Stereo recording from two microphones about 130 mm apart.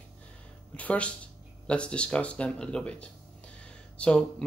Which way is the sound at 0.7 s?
10° left (ahead or behind).